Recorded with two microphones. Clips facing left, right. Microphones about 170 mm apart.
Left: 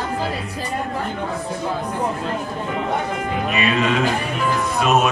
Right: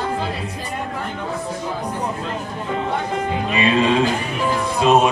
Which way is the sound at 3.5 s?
30° right (ahead or behind).